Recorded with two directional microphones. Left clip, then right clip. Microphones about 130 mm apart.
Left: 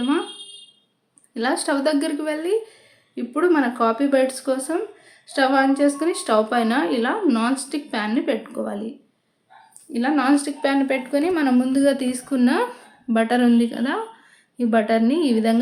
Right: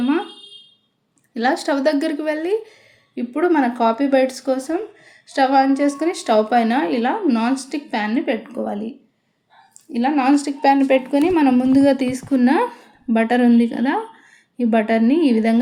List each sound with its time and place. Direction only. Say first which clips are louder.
1.3 s a woman's voice: right 3 dB; 25° right (ahead or behind)
9.9 s a woman's voice: right 2 dB; 15° right (ahead or behind)